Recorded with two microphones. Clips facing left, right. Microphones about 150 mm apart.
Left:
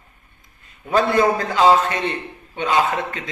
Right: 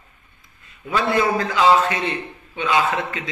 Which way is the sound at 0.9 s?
40° left (ahead or behind).